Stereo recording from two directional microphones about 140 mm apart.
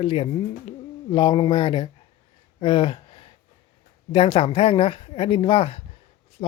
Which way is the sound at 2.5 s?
35° left (ahead or behind).